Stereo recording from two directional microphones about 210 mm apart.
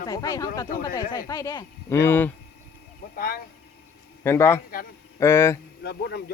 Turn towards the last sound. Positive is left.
turn(degrees=50)  # may be behind; listen again after turning